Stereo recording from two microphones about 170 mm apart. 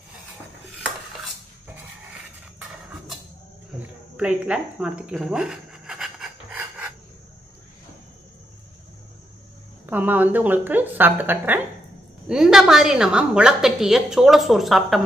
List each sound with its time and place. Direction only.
4.2 s rub: 5° right (ahead or behind)
9.8 s a woman's voice: 10° right (ahead or behind)